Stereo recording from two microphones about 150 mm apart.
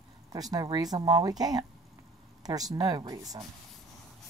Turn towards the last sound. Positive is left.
turn(degrees=-25)  # may be behind; listen again after turning